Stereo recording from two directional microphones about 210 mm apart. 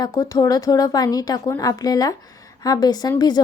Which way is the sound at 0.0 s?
15° left (ahead or behind).